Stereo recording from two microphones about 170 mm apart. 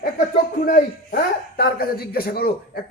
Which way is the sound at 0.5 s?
55° left (ahead or behind).